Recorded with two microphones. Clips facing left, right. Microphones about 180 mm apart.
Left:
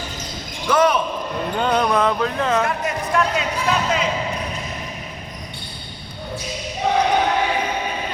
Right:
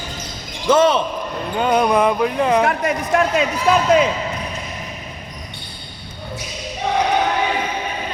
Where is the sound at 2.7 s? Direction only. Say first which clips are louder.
Right 4 dB; 60° right (ahead or behind).